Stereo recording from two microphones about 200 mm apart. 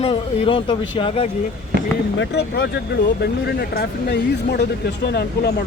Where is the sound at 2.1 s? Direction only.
55° left (ahead or behind).